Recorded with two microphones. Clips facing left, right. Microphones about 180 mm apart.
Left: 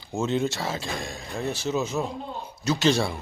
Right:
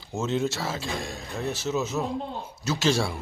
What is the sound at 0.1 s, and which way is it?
A man's voice, 5° right (ahead or behind).